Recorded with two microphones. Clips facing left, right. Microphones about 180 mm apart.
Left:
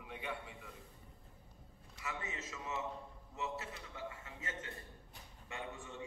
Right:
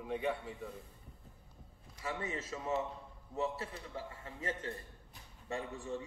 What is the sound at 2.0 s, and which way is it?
A man's voice, 30° right (ahead or behind).